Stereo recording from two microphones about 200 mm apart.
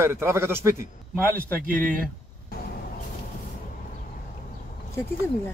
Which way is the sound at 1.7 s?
45° right (ahead or behind).